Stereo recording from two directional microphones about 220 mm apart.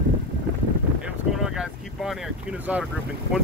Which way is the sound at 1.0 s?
Centre (ahead or behind).